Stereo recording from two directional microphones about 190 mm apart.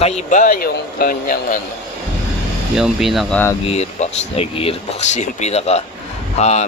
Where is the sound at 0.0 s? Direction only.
40° left (ahead or behind).